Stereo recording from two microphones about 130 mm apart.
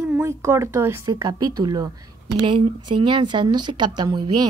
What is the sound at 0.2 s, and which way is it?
A woman's voice, 20° right (ahead or behind).